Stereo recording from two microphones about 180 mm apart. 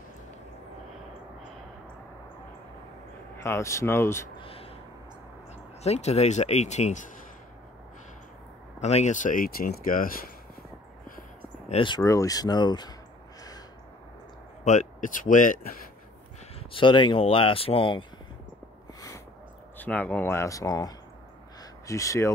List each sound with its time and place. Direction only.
3.4 s speech: 15° left (ahead or behind)
4.4 s a sound: 30° left (ahead or behind)
5.8 s speech: 35° left (ahead or behind)
8.8 s speech: 40° left (ahead or behind)
11.7 s speech: 25° left (ahead or behind)
14.6 s speech: 40° left (ahead or behind)
16.5 s speech: 30° left (ahead or behind)
18.9 s a sound: 15° left (ahead or behind)
19.8 s speech: 10° left (ahead or behind)